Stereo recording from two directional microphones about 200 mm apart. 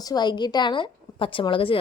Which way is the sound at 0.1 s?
20° left (ahead or behind).